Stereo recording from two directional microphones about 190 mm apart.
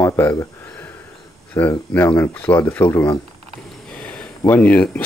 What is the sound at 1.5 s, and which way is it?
Speech, 10° left (ahead or behind).